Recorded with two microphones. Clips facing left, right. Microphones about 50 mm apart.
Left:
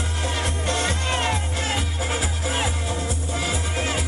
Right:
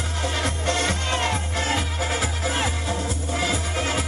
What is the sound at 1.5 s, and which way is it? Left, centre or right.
Music, right.